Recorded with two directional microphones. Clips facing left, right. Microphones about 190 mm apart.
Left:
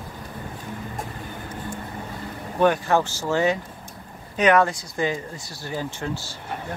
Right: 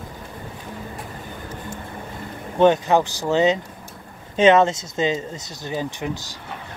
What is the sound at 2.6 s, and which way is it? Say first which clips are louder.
Speech: right 4 dB; 20° right (ahead or behind).